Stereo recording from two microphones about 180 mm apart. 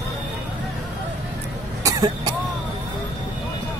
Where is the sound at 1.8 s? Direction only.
20° right (ahead or behind).